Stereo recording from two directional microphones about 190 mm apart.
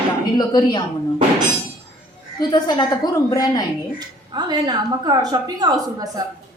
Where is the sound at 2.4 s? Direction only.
20° left (ahead or behind).